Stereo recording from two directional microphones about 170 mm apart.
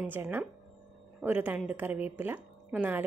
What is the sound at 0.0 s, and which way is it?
Speech, 10° right (ahead or behind).